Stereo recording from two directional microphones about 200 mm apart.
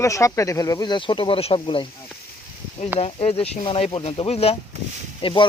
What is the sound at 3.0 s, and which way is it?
Speech, 30° left (ahead or behind).